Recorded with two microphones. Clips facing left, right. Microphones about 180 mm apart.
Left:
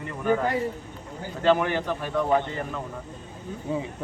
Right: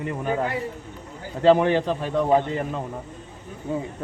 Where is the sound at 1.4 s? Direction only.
30° right (ahead or behind).